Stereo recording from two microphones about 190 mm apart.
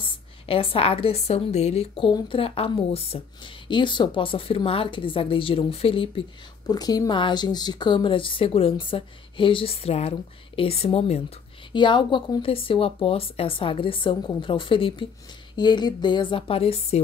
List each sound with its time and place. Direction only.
0.0 s a woman's voice: 30° left (ahead or behind)